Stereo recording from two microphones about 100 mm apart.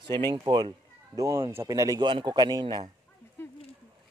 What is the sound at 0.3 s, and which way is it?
Speech, 50° right (ahead or behind).